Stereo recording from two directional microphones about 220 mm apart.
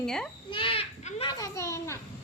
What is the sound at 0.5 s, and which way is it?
Children playing, 25° left (ahead or behind).